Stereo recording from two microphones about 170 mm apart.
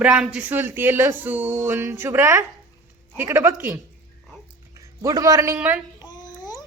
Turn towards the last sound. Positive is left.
turn(degrees=20)  # may be behind; listen again after turning